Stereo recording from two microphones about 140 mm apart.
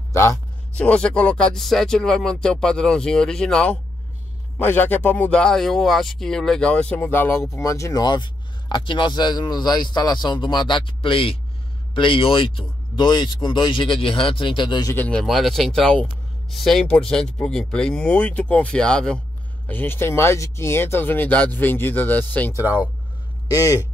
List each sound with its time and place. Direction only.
0.1 s a man's voice: 20° left (ahead or behind)
0.7 s a man's voice: 10° left (ahead or behind); by 15.0 s 30° left (ahead or behind)
15.0 s a man's voice: 10° left (ahead or behind); by 23.9 s 25° left (ahead or behind)